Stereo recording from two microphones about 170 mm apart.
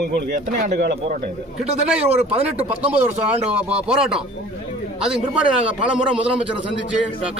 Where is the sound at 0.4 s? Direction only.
70° right (ahead or behind).